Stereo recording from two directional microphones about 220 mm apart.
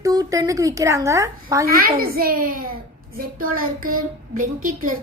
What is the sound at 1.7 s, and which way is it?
A child's voice, 40° right (ahead or behind).